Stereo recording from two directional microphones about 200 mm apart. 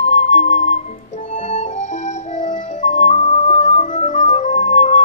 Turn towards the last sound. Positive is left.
turn(degrees=35)  # may be behind; listen again after turning